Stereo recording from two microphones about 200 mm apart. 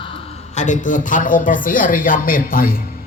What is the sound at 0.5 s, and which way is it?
Speech, 40° left (ahead or behind).